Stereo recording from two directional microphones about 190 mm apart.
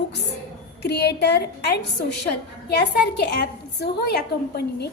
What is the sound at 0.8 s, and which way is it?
A woman's voice, 60° left (ahead or behind).